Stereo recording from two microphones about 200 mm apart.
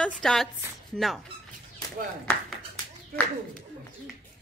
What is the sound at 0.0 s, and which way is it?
Speech, 5° left (ahead or behind).